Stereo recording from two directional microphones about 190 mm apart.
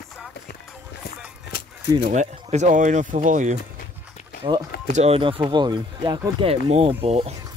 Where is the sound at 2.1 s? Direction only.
35° right (ahead or behind).